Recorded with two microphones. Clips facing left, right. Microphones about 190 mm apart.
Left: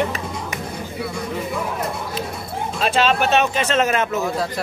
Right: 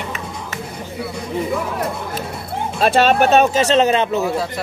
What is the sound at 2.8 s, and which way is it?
Speech, 45° right (ahead or behind).